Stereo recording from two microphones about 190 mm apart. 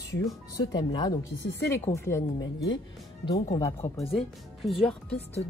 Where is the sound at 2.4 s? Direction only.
75° left (ahead or behind).